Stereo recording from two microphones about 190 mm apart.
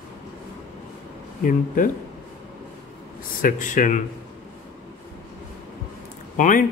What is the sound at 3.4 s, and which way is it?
Speech, 45° left (ahead or behind).